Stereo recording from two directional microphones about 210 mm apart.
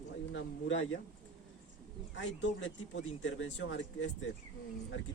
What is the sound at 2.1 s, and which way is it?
Speech, 60° left (ahead or behind).